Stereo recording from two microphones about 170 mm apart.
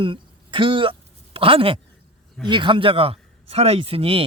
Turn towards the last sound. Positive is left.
turn(degrees=-35)  # may be behind; listen again after turning